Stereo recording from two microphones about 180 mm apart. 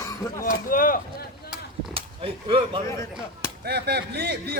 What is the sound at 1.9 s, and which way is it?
Speech, 30° right (ahead or behind).